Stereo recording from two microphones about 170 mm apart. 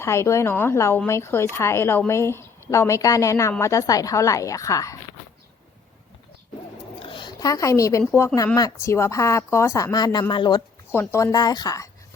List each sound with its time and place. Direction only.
0.0 s a woman's voice: 15° left (ahead or behind)
7.0 s a woman's voice: 30° left (ahead or behind)
10.9 s speech: 15° left (ahead or behind)